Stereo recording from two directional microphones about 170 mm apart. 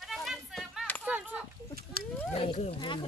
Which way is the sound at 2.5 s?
30° left (ahead or behind).